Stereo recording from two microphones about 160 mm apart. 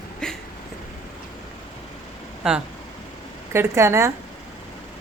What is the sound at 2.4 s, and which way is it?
Speech, 5° right (ahead or behind).